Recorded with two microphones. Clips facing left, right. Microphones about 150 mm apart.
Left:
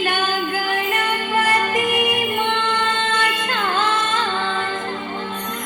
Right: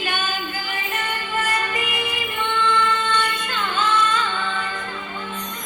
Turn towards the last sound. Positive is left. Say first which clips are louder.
# left 3 dB
turn(degrees=40)  # may be behind; listen again after turning